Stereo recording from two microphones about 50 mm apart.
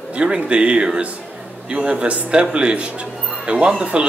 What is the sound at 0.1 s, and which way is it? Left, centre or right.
A man's voice, centre.